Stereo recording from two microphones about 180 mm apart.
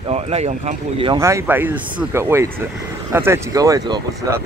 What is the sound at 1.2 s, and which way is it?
Speech, 15° right (ahead or behind).